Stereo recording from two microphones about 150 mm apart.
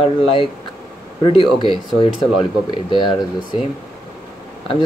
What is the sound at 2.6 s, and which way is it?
Speech, 30° left (ahead or behind).